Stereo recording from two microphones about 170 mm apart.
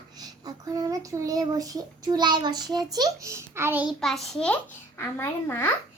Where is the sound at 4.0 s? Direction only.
Centre (ahead or behind).